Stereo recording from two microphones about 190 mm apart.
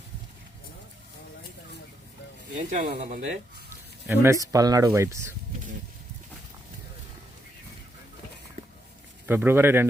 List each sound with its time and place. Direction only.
2.6 s speech: 40° right (ahead or behind)
4.1 s speech: 15° right (ahead or behind)
9.2 s speech: 10° right (ahead or behind)